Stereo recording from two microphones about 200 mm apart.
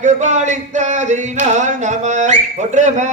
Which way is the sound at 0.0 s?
35° right (ahead or behind).